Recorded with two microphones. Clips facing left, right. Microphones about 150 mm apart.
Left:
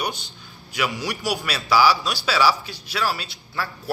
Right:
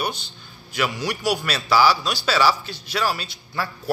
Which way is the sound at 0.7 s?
10° left (ahead or behind).